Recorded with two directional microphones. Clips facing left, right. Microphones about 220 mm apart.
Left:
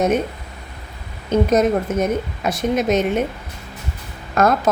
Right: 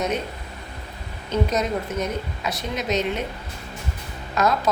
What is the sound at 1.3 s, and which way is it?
Speech, 50° left (ahead or behind).